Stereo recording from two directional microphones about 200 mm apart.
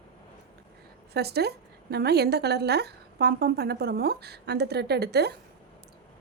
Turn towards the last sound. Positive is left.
turn(degrees=-55)  # may be behind; listen again after turning